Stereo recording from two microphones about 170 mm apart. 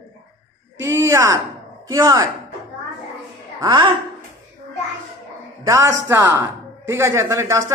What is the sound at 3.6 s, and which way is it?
Speech, 30° right (ahead or behind).